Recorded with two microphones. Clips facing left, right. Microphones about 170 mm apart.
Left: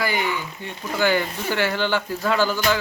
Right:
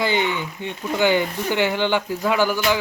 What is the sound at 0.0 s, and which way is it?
Speech, 25° right (ahead or behind).